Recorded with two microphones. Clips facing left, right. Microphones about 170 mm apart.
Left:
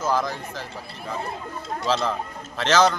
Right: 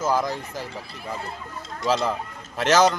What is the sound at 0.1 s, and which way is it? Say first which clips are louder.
Speech: right 1 dB; 15° right (ahead or behind).